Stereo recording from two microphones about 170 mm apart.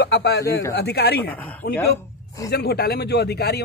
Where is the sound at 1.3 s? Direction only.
10° left (ahead or behind).